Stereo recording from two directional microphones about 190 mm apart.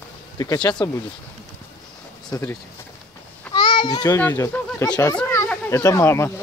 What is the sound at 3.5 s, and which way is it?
Children playing, 25° left (ahead or behind).